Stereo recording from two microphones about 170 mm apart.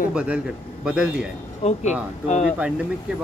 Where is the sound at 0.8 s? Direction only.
5° right (ahead or behind).